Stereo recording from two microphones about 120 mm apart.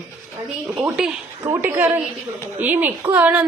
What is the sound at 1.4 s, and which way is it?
A woman's voice, 20° right (ahead or behind).